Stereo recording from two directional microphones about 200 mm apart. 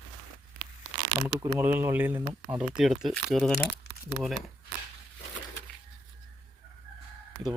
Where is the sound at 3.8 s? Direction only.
55° left (ahead or behind).